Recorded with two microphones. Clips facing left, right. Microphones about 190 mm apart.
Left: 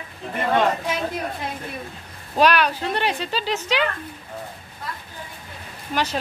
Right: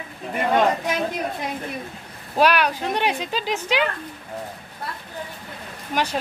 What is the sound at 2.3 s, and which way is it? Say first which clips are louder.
Speech: even; 10° right (ahead or behind).